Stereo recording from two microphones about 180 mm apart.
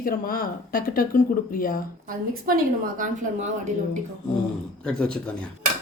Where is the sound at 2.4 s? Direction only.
50° right (ahead or behind).